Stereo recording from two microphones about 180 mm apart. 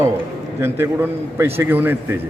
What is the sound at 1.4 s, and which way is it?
Speech, 10° right (ahead or behind).